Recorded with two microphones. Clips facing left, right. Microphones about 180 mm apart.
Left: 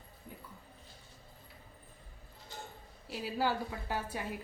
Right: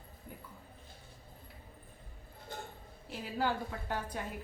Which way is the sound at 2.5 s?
55° right (ahead or behind).